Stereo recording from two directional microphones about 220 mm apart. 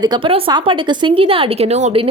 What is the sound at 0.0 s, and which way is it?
A woman's voice, 20° right (ahead or behind).